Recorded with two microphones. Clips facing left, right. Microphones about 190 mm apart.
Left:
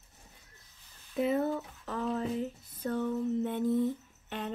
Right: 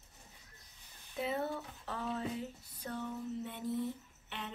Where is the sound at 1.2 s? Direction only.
45° left (ahead or behind).